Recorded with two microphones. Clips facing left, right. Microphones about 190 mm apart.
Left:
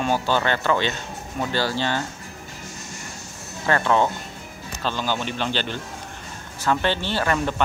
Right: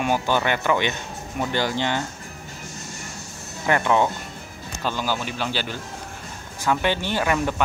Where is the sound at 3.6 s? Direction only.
15° right (ahead or behind).